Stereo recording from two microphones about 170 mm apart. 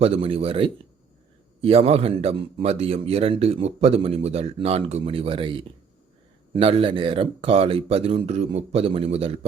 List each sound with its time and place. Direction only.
0.0 s speech: 35° right (ahead or behind)